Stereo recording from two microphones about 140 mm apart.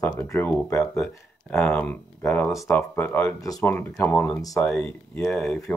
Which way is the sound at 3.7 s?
15° left (ahead or behind).